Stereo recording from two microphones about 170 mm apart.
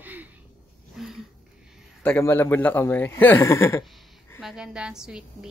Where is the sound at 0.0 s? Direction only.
10° right (ahead or behind).